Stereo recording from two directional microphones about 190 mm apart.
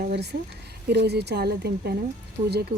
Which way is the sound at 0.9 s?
60° right (ahead or behind).